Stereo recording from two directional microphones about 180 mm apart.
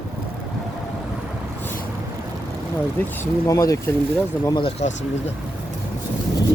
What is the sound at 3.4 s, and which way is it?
Speech, 20° left (ahead or behind).